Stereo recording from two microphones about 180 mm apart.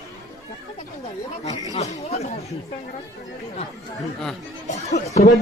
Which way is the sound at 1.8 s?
40° left (ahead or behind).